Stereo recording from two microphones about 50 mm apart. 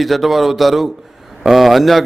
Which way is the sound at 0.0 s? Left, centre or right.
Centre.